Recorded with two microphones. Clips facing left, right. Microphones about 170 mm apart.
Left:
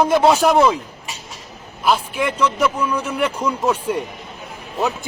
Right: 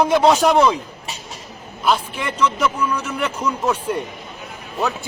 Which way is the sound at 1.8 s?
10° left (ahead or behind).